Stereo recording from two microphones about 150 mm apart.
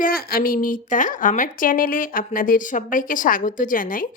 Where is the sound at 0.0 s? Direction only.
80° left.